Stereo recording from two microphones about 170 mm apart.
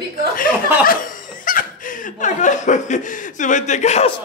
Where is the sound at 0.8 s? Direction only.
55° left (ahead or behind).